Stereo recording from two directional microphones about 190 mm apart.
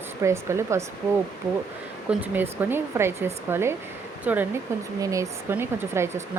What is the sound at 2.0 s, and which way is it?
Speech, 10° right (ahead or behind).